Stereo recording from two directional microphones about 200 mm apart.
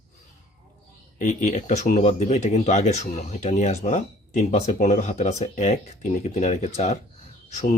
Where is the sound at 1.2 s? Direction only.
40° left (ahead or behind).